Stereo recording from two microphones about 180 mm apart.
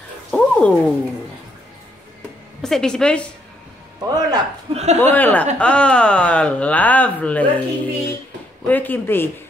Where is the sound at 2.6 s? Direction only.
5° left (ahead or behind).